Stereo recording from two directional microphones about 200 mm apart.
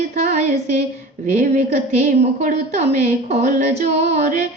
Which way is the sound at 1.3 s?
40° right (ahead or behind).